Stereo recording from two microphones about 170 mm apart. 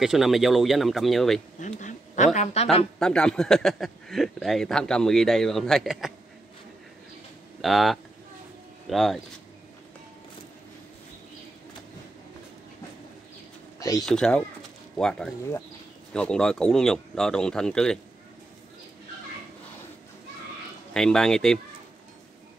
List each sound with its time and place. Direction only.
0.0 s speech: centre (ahead or behind)
1.6 s a woman's voice: 45° left (ahead or behind)
3.0 s speech: 5° left (ahead or behind)
7.6 s speech: centre (ahead or behind)
13.7 s a sound: 20° left (ahead or behind)
14.0 s speech: 5° left (ahead or behind)
20.9 s speech: 5° left (ahead or behind)